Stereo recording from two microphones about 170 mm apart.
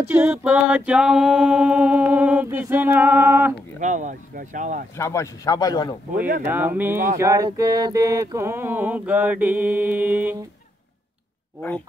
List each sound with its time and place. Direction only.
0.1 s male singing: 10° right (ahead or behind)
3.8 s speech: 45° right (ahead or behind)
4.9 s speech: 15° left (ahead or behind)
6.4 s male singing: 10° right (ahead or behind)